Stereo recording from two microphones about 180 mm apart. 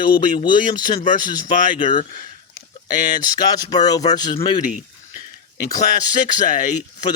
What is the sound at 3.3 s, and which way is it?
Speech, 20° left (ahead or behind).